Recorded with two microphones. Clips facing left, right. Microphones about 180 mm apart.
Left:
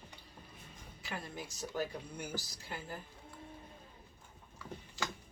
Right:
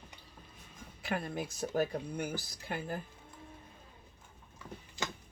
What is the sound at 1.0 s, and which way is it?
Speech, 55° right (ahead or behind).